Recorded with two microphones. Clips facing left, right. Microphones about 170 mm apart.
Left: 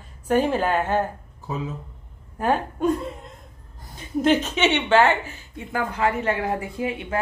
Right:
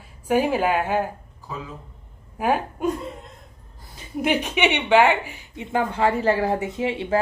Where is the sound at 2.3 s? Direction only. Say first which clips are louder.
Even; 10° right (ahead or behind).